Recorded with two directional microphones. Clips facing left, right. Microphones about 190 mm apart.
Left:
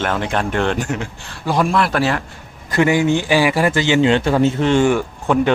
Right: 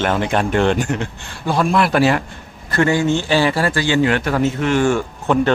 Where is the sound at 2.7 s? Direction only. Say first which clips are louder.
Left 1 dB; 15° left (ahead or behind).